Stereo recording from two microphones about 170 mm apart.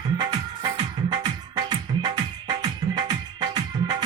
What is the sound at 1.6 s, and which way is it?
Music, 25° right (ahead or behind).